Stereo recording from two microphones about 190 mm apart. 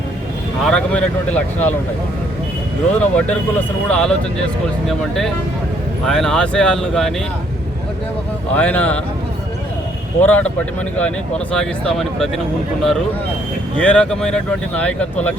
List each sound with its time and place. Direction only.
0.6 s speech: 5° left (ahead or behind)
2.9 s speech: 5° left (ahead or behind)
8.5 s speech: 5° left (ahead or behind)
10.2 s speech: 10° left (ahead or behind)
13.7 s speech: 5° left (ahead or behind)